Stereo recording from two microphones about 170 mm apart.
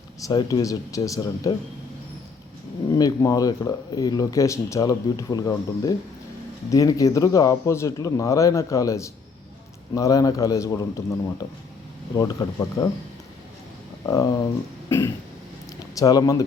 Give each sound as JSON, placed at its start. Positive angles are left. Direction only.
{"t": 0.3, "sound": "speech", "side_deg": 20}
{"t": 2.9, "sound": "speech", "side_deg": 20}
{"t": 14.0, "sound": "speech", "side_deg": 20}
{"t": 14.8, "sound": "a sound", "side_deg": 15}
{"t": 16.0, "sound": "speech", "side_deg": 20}